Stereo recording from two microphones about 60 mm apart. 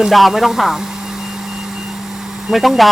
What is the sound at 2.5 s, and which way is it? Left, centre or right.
Speech, centre.